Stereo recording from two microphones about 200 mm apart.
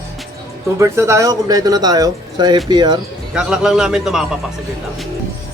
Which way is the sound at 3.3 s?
5° right (ahead or behind).